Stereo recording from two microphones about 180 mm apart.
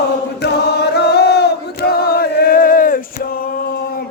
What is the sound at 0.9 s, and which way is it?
Chant, 65° left (ahead or behind).